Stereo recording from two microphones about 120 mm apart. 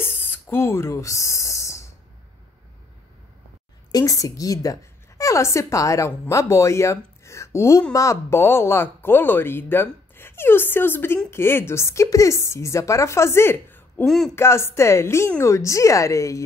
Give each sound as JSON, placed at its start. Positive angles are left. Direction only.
{"t": 0.0, "sound": "a sound", "side_deg": 20}
{"t": 3.9, "sound": "a woman's voice", "side_deg": 30}
{"t": 14.0, "sound": "speech", "side_deg": 5}
{"t": 14.3, "sound": "speech", "side_deg": 20}